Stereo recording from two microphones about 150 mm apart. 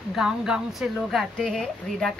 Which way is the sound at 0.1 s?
5° right (ahead or behind).